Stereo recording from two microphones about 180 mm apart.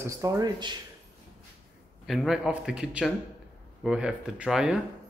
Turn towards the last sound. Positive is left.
turn(degrees=-5)  # may be behind; listen again after turning